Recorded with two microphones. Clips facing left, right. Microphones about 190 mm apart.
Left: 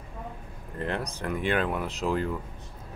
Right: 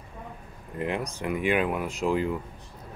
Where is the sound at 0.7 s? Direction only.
10° right (ahead or behind).